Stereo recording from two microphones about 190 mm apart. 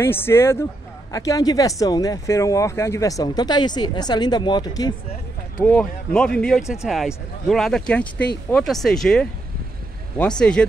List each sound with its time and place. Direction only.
0.0 s speech: 10° left (ahead or behind)
5.7 s speech: 5° left (ahead or behind)